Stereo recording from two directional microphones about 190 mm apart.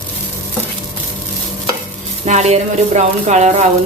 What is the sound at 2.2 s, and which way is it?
Speech, 35° right (ahead or behind).